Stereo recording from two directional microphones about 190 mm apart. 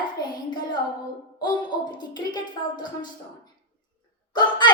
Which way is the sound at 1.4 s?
20° left (ahead or behind).